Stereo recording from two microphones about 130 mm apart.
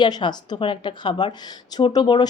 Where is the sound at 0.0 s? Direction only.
35° left (ahead or behind).